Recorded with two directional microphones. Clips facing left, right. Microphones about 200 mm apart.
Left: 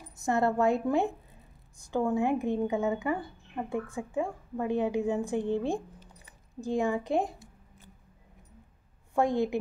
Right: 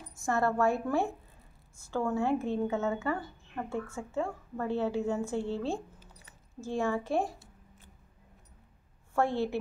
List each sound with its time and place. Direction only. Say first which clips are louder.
0.1 s a woman's voice: left 2 dB; 20° left (ahead or behind)
6.2 s a sound: left 5 dB; 15° left (ahead or behind)
9.1 s speech: left 3 dB; 15° left (ahead or behind)